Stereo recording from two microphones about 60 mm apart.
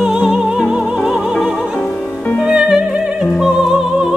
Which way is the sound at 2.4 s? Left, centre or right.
Centre.